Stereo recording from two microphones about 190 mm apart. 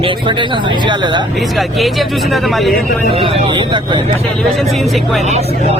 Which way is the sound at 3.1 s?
30° right (ahead or behind).